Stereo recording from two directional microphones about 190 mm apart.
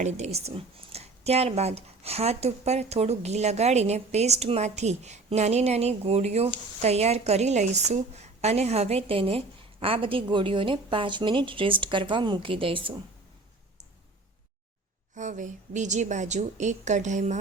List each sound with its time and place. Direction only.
0.0 s a woman's voice: 35° right (ahead or behind)
15.1 s speech: 40° right (ahead or behind)